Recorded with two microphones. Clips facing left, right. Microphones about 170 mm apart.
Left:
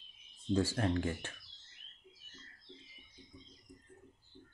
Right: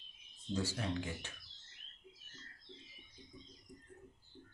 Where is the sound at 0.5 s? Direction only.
50° left (ahead or behind).